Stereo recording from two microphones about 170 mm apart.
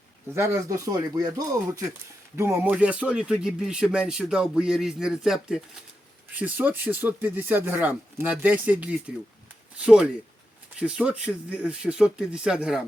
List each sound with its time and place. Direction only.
0.3 s speech: 15° right (ahead or behind)